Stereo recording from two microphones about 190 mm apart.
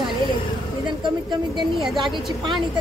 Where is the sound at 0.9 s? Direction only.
25° right (ahead or behind).